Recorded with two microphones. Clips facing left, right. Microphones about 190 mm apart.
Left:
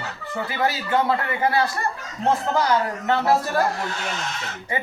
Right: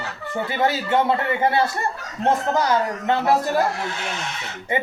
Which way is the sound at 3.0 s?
20° right (ahead or behind).